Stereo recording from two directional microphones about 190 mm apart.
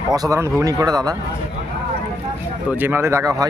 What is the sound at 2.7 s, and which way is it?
Speech, 10° right (ahead or behind).